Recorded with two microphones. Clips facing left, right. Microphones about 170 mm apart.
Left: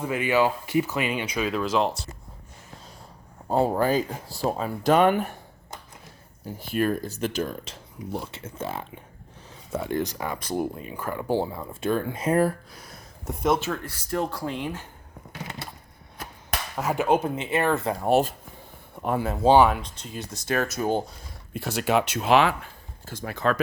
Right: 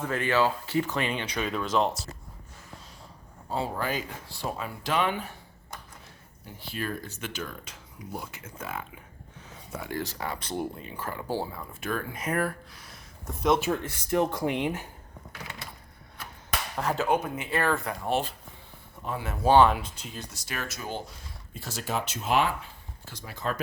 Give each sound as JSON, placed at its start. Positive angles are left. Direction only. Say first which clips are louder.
{"t": 0.0, "sound": "speech", "louder": "left 3 dB", "side_deg": 10}
{"t": 3.5, "sound": "speech", "louder": "left 9 dB", "side_deg": 50}
{"t": 6.4, "sound": "speech", "louder": "left 10 dB", "side_deg": 45}
{"t": 13.6, "sound": "speech", "louder": "right 2 dB", "side_deg": -15}
{"t": 16.7, "sound": "speech", "louder": "left 4 dB", "side_deg": 10}
{"t": 17.2, "sound": "speech", "louder": "left 4 dB", "side_deg": 25}
{"t": 18.0, "sound": "speech", "louder": "left 10 dB", "side_deg": 45}
{"t": 19.2, "sound": "speech", "louder": "left 7 dB", "side_deg": 30}
{"t": 19.5, "sound": "speech", "louder": "left 2 dB", "side_deg": 10}
{"t": 19.7, "sound": "speech", "louder": "left 2 dB", "side_deg": -5}
{"t": 20.5, "sound": "speech", "louder": "left 11 dB", "side_deg": 45}
{"t": 21.5, "sound": "speech", "louder": "left 9 dB", "side_deg": 65}
{"t": 23.0, "sound": "speech", "louder": "left 8 dB", "side_deg": 55}